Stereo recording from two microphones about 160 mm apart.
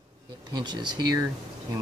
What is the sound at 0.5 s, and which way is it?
Speech, 25° right (ahead or behind).